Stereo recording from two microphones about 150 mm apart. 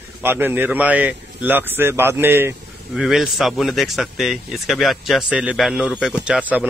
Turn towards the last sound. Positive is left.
turn(degrees=-10)  # may be behind; listen again after turning